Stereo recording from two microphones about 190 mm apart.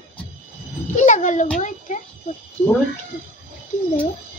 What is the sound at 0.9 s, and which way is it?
Speech, 40° left (ahead or behind).